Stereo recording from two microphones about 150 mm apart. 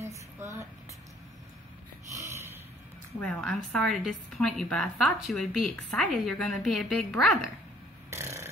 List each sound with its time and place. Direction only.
0.0 s a sound: 20° right (ahead or behind)
2.2 s snort: 15° right (ahead or behind)
3.2 s speech: 5° left (ahead or behind)
8.1 s burping: 15° right (ahead or behind)